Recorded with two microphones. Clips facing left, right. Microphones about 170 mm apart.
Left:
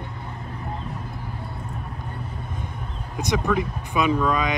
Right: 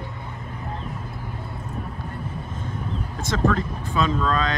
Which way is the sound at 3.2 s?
15° left (ahead or behind).